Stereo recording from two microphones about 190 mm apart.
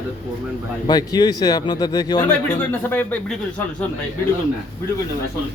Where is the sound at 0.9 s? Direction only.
20° left (ahead or behind).